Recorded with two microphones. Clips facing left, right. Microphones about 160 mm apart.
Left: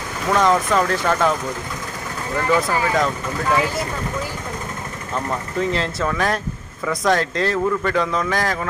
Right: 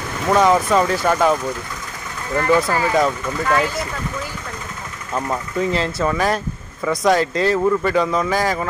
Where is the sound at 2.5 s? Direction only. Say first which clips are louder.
Right 2 dB; 10° right (ahead or behind).